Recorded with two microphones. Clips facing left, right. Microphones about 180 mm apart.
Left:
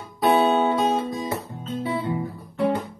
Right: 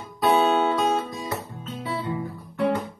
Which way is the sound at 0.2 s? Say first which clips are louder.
Left 1 dB; 20° left (ahead or behind).